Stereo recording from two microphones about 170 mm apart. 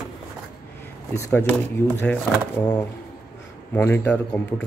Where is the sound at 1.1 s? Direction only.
15° left (ahead or behind).